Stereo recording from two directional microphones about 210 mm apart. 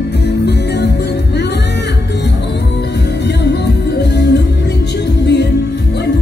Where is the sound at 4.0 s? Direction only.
55° left (ahead or behind).